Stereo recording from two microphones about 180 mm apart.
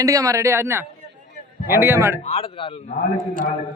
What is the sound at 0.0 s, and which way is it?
Speech, 20° right (ahead or behind).